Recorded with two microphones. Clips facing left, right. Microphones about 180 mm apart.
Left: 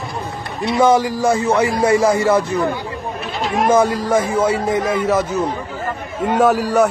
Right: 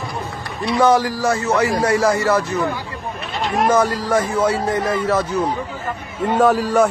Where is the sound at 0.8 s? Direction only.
10° left (ahead or behind).